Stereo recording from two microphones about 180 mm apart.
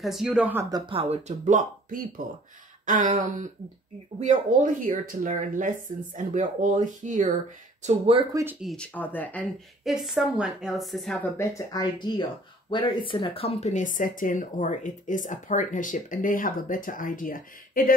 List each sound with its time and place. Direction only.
0.0 s a woman's voice: centre (ahead or behind)
0.7 s speech: 25° right (ahead or behind)
1.1 s speech: 40° right (ahead or behind)
2.8 s a sound: 45° right (ahead or behind)
4.2 s speech: 45° right (ahead or behind)
8.5 s a woman's voice: 5° left (ahead or behind)
11.3 s speech: 20° left (ahead or behind); by 17.9 s 50° left (ahead or behind)